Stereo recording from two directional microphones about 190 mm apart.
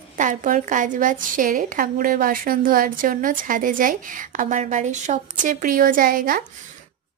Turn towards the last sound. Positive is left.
turn(degrees=-45)  # may be behind; listen again after turning